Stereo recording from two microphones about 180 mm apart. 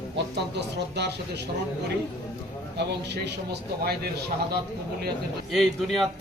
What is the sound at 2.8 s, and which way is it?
Speech, 70° right (ahead or behind).